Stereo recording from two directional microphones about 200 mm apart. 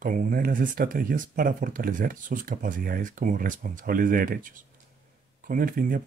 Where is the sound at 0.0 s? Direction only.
40° right (ahead or behind).